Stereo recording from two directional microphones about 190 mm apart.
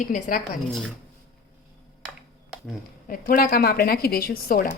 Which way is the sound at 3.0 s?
50° left (ahead or behind).